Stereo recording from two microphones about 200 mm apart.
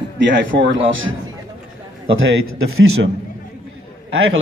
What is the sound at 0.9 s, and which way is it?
Speech, 75° right (ahead or behind).